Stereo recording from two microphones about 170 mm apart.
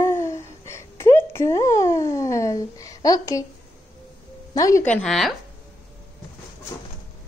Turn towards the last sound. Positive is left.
turn(degrees=0)  # may be behind; listen again after turning